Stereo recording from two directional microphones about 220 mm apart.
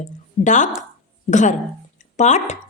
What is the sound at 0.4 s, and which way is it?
Speech, 35° left (ahead or behind).